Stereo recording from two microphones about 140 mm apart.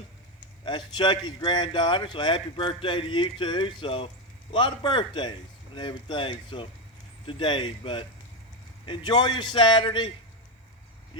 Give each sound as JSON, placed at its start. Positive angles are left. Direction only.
{"t": 0.6, "sound": "a man's voice", "side_deg": 35}